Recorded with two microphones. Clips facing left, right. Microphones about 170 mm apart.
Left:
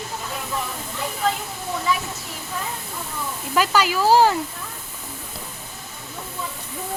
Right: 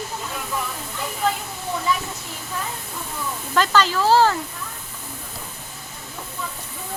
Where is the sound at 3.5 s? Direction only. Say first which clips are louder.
Right 1 dB; 10° left (ahead or behind).